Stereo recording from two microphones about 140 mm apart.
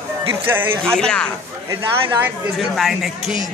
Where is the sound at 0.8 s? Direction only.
5° left (ahead or behind).